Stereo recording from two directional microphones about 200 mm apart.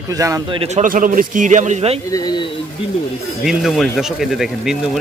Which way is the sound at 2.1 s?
20° left (ahead or behind).